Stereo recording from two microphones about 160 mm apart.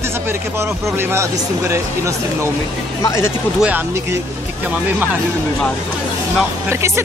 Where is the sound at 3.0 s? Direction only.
20° left (ahead or behind).